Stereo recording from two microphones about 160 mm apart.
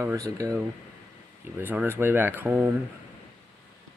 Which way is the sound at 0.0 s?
20° right (ahead or behind).